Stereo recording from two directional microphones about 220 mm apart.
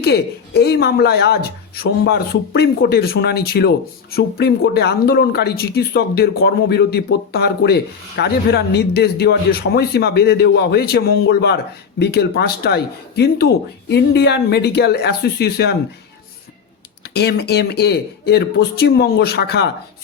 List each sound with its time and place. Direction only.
0.0 s speech: 50° left (ahead or behind)
17.0 s speech: 50° left (ahead or behind)